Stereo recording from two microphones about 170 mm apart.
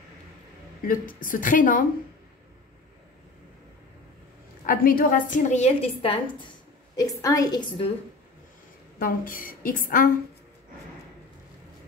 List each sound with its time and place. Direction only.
0.8 s a woman's voice: 55° left (ahead or behind)
4.6 s a woman's voice: 60° left (ahead or behind); by 7.6 s 20° left (ahead or behind)
9.0 s a woman's voice: 55° left (ahead or behind)